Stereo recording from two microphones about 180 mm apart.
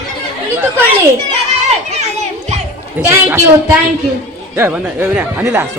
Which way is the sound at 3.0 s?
15° right (ahead or behind).